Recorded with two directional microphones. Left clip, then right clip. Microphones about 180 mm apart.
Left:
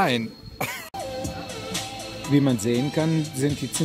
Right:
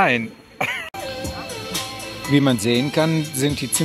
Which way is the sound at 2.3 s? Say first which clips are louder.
Right 4 dB; 5° right (ahead or behind).